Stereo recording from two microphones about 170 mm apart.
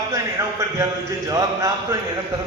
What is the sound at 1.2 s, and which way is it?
Speech, 20° right (ahead or behind).